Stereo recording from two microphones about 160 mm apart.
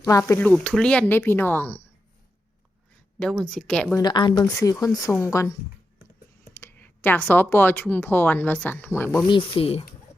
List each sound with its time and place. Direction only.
0.0 s speech: 20° left (ahead or behind)
0.5 s speech: 5° left (ahead or behind)
3.2 s speech: 5° left (ahead or behind)
3.9 s speech: 25° left (ahead or behind)
6.5 s clicking: 15° left (ahead or behind)
7.3 s speech: 10° left (ahead or behind)
9.2 s speech: 30° left (ahead or behind)